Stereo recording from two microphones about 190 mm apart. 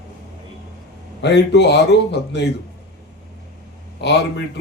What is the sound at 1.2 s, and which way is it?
A man's voice, 65° left (ahead or behind).